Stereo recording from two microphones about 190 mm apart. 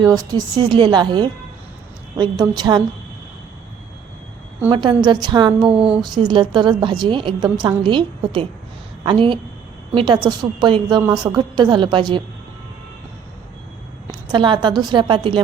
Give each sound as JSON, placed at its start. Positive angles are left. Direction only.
{"t": 0.0, "sound": "a woman's voice", "side_deg": -20}
{"t": 4.7, "sound": "a woman's voice", "side_deg": -25}
{"t": 5.7, "sound": "speech", "side_deg": -5}
{"t": 6.0, "sound": "a woman's voice", "side_deg": -25}
{"t": 14.3, "sound": "a woman's voice", "side_deg": -25}